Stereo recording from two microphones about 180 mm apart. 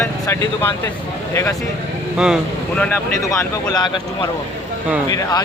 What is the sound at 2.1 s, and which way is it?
Speech, 5° right (ahead or behind).